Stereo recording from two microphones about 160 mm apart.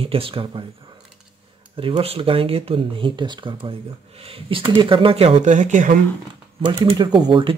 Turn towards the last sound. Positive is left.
turn(degrees=-30)  # may be behind; listen again after turning